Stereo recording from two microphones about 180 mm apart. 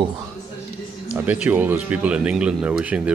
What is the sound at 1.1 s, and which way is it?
Speech, 10° right (ahead or behind).